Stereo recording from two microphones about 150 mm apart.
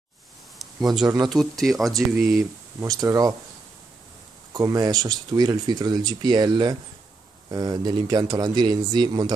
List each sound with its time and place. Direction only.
0.8 s speech: 25° right (ahead or behind)
1.3 s speech: centre (ahead or behind)
2.8 s speech: 20° right (ahead or behind)
4.6 s speech: 25° right (ahead or behind)